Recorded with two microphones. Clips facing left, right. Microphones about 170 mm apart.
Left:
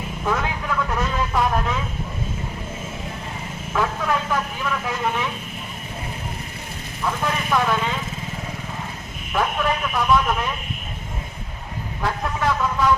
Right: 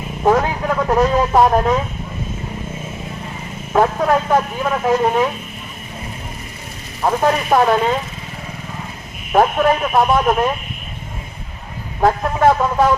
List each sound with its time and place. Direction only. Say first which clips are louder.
0.2 s vehicle: right 10 dB; 45° right (ahead or behind)
3.7 s speech: right 8 dB; 45° right (ahead or behind)
7.0 s speech: right 8 dB; 50° right (ahead or behind)
9.3 s speech: right 9 dB; 45° right (ahead or behind)
11.9 s speech: right 10 dB; 50° right (ahead or behind)